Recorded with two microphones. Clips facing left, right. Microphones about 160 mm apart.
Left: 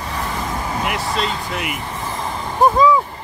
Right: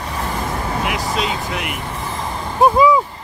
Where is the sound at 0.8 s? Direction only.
Centre (ahead or behind).